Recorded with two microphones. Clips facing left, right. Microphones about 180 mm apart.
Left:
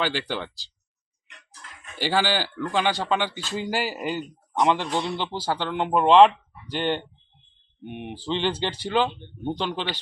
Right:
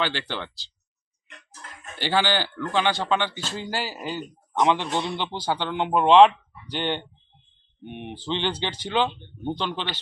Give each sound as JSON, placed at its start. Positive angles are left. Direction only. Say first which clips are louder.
{"t": 0.0, "sound": "speech", "louder": "left 1 dB", "side_deg": 10}
{"t": 2.0, "sound": "speech", "louder": "even", "side_deg": 5}
{"t": 4.5, "sound": "speech", "louder": "even", "side_deg": 0}